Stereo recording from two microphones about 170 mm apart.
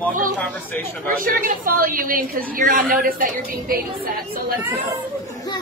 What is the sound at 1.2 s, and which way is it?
A woman's voice, 55° right (ahead or behind).